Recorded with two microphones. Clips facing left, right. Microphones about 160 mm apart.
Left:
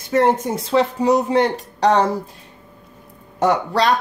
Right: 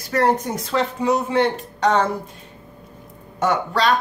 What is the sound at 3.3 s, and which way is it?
Speech, 35° left (ahead or behind).